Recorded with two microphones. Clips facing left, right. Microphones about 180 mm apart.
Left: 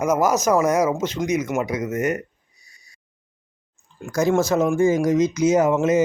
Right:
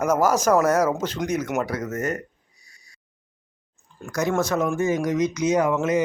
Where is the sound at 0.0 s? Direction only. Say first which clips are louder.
Left 1 dB; 10° left (ahead or behind).